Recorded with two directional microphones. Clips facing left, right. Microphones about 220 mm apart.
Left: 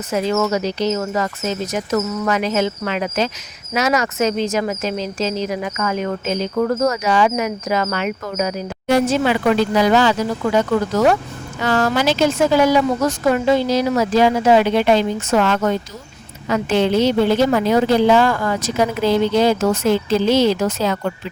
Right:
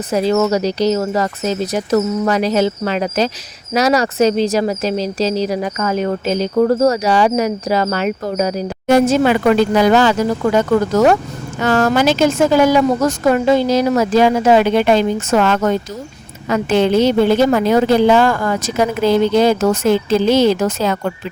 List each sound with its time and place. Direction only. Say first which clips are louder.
0.1 s a woman's voice: right 4 dB; 35° right (ahead or behind)